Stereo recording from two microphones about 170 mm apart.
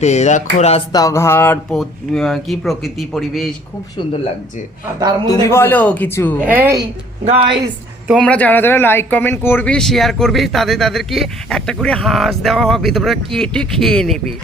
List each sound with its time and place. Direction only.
0.0 s speech: 40° left (ahead or behind)
0.9 s a man's voice: 20° left (ahead or behind)
1.7 s speech: centre (ahead or behind)
5.3 s a man's voice: 15° left (ahead or behind)
6.4 s a woman's voice: 10° right (ahead or behind)
7.3 s a woman's voice: 35° right (ahead or behind)
8.0 s speech: 5° right (ahead or behind)
8.3 s speech: 10° left (ahead or behind)